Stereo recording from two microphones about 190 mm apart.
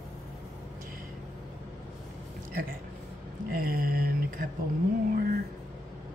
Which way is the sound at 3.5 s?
50° right (ahead or behind).